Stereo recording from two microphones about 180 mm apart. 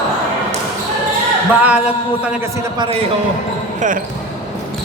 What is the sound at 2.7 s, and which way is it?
Speech, 30° right (ahead or behind).